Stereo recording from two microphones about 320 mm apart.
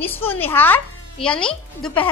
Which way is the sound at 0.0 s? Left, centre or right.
Centre.